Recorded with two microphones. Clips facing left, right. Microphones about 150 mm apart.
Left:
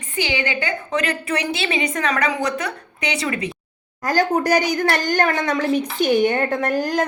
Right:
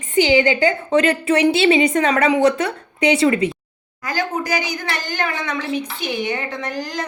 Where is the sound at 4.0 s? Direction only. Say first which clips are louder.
Left 5 dB; 45° left (ahead or behind).